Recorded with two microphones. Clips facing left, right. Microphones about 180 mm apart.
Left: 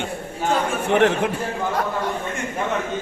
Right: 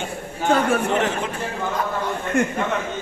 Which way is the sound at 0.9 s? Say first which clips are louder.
Left 4 dB; 60° left (ahead or behind).